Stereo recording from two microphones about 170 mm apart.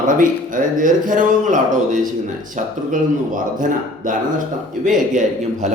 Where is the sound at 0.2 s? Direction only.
50° right (ahead or behind).